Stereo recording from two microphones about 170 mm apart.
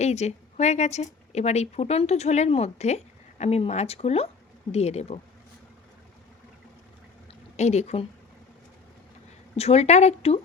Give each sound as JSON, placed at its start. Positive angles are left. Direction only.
{"t": 0.0, "sound": "speech", "side_deg": 40}
{"t": 7.5, "sound": "speech", "side_deg": 40}
{"t": 9.6, "sound": "speech", "side_deg": 40}